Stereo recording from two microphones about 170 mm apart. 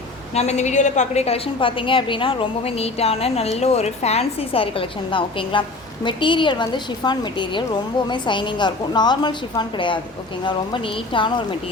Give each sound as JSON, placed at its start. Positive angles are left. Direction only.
{"t": 0.3, "sound": "a woman's voice", "side_deg": 40}